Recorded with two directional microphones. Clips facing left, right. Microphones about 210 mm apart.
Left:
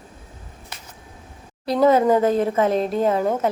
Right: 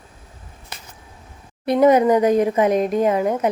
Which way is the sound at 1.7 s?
20° right (ahead or behind).